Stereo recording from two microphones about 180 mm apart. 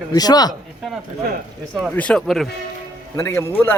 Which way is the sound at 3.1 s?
15° left (ahead or behind).